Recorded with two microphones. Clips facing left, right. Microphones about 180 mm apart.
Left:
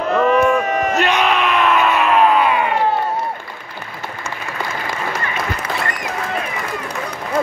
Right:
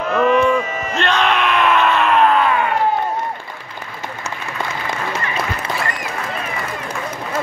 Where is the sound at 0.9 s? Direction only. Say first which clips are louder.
Right 2 dB; 10° left (ahead or behind).